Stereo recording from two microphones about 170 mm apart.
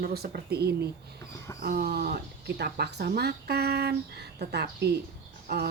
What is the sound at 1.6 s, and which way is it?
A woman's voice, 60° right (ahead or behind).